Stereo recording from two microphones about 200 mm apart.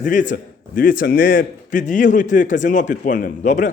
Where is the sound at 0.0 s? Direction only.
40° left (ahead or behind).